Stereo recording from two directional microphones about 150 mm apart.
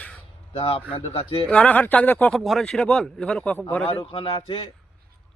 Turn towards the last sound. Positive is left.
turn(degrees=35)  # may be behind; listen again after turning